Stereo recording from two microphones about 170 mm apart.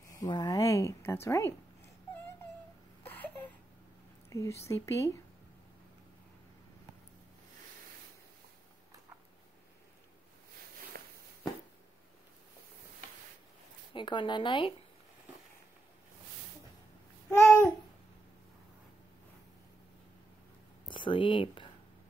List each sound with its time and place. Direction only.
0.1 s a woman's voice: 20° left (ahead or behind)
3.0 s a sound: 10° left (ahead or behind)
4.3 s speech: 15° left (ahead or behind)
10.9 s walk: 60° right (ahead or behind)
13.9 s a woman's voice: 25° left (ahead or behind)
17.3 s babbling: 15° left (ahead or behind)
20.9 s speech: 30° left (ahead or behind)